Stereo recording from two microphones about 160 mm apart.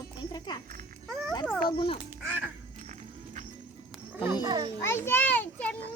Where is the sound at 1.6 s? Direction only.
35° left (ahead or behind).